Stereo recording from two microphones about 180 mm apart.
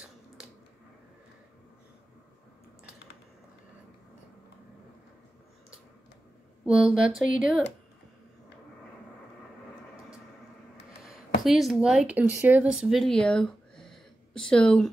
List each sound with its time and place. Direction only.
6.6 s speech: 5° right (ahead or behind)
11.4 s speech: centre (ahead or behind)